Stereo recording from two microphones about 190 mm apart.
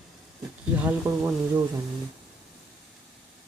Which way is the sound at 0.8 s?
5° right (ahead or behind).